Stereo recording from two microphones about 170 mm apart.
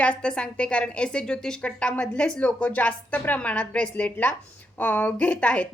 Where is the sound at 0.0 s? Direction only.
5° left (ahead or behind).